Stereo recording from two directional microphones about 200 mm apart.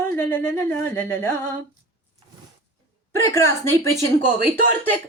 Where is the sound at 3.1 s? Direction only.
15° left (ahead or behind).